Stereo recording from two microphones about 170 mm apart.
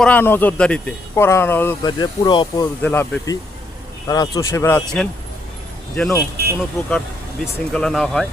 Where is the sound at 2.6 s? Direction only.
15° left (ahead or behind).